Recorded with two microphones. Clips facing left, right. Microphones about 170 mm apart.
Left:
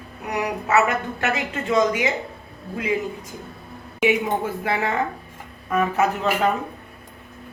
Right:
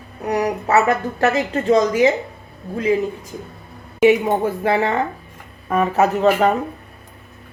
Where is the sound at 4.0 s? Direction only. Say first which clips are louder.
Right 6 dB; 35° right (ahead or behind).